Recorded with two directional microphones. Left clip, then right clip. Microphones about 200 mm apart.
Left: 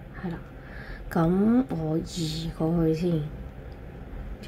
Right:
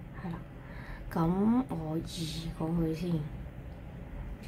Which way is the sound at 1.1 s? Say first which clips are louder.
Left 6 dB; 15° left (ahead or behind).